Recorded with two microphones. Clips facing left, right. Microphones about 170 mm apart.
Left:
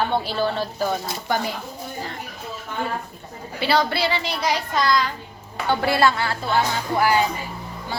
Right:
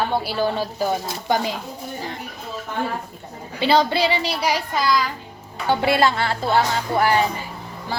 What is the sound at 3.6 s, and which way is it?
A child's voice, 20° right (ahead or behind).